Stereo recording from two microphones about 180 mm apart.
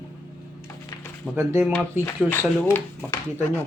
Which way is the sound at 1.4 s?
10° right (ahead or behind).